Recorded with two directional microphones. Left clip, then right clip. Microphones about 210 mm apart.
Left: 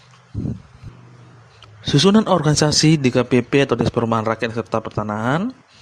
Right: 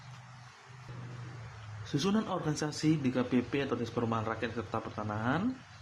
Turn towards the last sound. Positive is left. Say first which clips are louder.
# left 13 dB
turn(degrees=50)  # may be behind; listen again after turning